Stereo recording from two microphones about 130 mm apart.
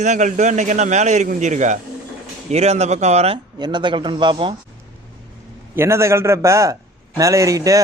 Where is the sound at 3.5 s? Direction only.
35° right (ahead or behind).